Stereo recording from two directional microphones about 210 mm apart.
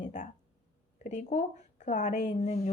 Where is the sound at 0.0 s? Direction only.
35° left (ahead or behind).